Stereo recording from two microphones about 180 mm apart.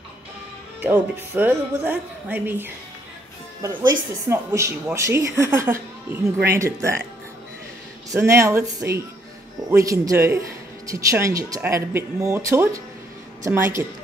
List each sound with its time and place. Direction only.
1.3 s speech: 10° right (ahead or behind)
8.1 s speech: 15° right (ahead or behind)